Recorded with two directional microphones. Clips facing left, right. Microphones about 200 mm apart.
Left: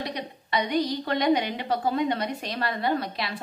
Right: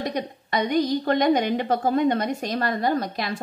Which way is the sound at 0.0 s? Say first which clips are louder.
Right 5 dB; 45° right (ahead or behind).